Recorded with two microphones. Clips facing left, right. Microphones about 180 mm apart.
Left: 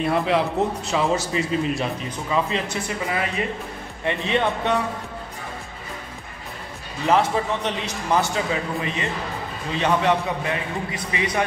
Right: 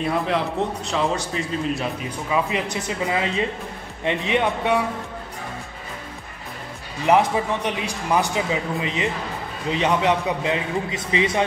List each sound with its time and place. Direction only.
0.0 s a man's voice: centre (ahead or behind)
2.0 s a man's voice: 10° right (ahead or behind)
7.1 s a man's voice: 15° right (ahead or behind)